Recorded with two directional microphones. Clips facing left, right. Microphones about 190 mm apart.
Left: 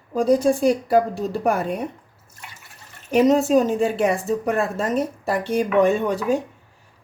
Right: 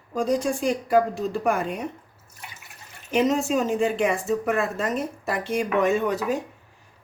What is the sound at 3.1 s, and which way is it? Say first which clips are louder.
A woman's voice: left 6 dB; 40° left (ahead or behind).